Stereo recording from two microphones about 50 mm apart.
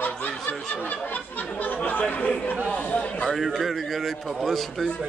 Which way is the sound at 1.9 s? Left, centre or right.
Left.